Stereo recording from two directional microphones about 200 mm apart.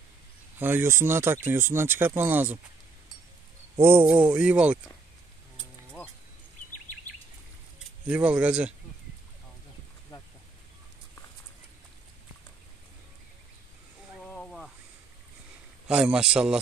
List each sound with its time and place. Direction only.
0.6 s speech: 10° right (ahead or behind)
3.7 s speech: 10° right (ahead or behind)
8.1 s a man's voice: 5° right (ahead or behind)
14.2 s a sound: 5° left (ahead or behind)
15.9 s a man's voice: 5° right (ahead or behind)